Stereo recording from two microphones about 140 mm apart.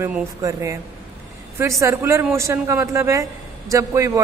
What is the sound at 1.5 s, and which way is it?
A man's voice, 20° right (ahead or behind).